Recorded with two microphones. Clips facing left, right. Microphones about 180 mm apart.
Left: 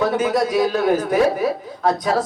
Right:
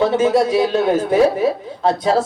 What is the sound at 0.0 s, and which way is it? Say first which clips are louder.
Speech: right 4 dB; 25° right (ahead or behind).